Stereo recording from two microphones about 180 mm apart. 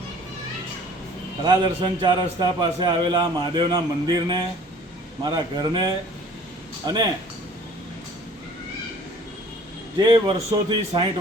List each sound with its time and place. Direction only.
1.5 s a man's voice: 30° right (ahead or behind)
10.0 s a man's voice: 25° right (ahead or behind)